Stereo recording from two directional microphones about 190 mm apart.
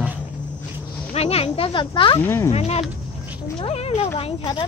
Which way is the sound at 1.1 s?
30° left (ahead or behind).